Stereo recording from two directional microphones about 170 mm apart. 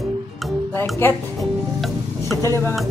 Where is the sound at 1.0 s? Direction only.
15° left (ahead or behind).